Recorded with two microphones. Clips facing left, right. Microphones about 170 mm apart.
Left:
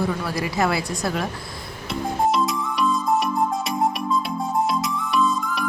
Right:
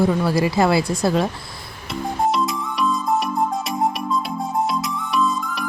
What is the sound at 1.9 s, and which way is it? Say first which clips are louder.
Music: even; centre (ahead or behind).